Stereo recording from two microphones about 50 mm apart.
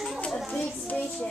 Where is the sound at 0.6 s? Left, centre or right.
Left.